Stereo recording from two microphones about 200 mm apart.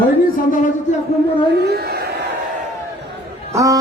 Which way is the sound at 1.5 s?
55° right (ahead or behind).